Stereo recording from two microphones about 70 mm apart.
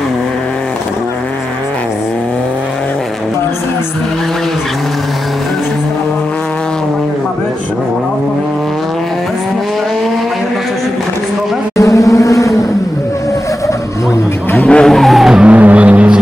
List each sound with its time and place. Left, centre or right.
11.7 s vehicle: left
14.6 s vehicle: centre
15.4 s vehicle: centre